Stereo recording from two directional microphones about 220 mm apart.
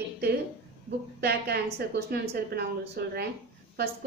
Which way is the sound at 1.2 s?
45° right (ahead or behind).